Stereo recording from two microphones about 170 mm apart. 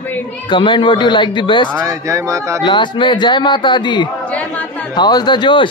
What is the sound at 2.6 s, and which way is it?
A woman's voice, 25° left (ahead or behind).